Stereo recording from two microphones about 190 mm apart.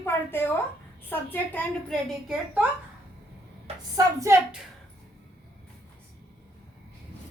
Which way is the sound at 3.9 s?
15° right (ahead or behind).